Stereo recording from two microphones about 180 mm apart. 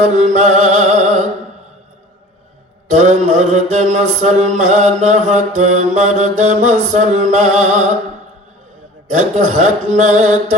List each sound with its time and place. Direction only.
0.1 s music: 40° right (ahead or behind)
3.0 s mantra: 40° right (ahead or behind)
9.3 s mantra: 40° right (ahead or behind)